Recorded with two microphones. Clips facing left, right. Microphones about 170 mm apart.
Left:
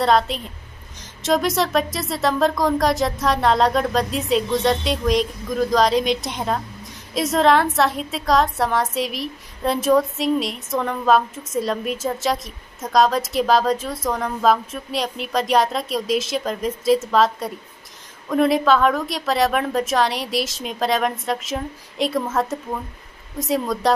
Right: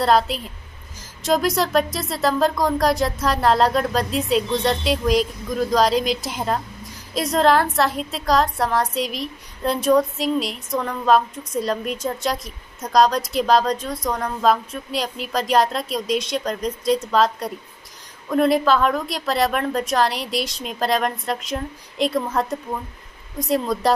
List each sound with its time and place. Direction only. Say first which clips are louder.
0.0 s a woman's voice: even; centre (ahead or behind)